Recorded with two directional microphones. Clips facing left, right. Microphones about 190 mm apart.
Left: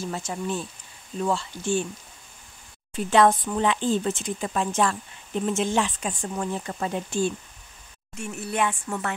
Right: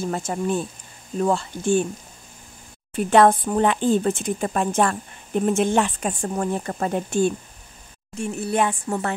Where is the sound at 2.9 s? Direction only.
55° right (ahead or behind).